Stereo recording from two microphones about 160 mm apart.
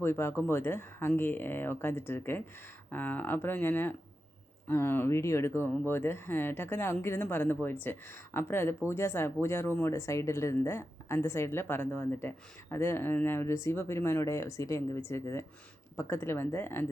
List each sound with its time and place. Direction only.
0.0 s speech: 15° left (ahead or behind)